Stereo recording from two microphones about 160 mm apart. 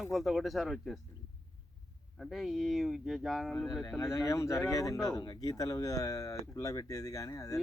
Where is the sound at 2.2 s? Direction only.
Centre (ahead or behind).